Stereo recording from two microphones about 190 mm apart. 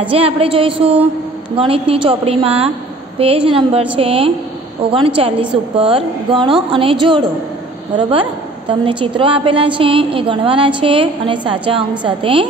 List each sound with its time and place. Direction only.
0.1 s a woman's voice: 30° right (ahead or behind)